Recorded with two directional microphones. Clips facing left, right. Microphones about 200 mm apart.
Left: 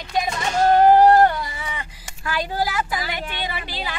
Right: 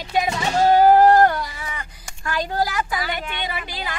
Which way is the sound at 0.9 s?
Centre (ahead or behind).